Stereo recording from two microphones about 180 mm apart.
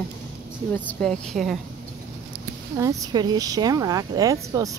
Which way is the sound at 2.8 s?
20° right (ahead or behind).